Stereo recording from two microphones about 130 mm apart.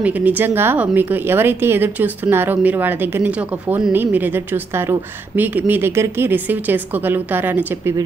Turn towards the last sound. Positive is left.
turn(degrees=-15)  # may be behind; listen again after turning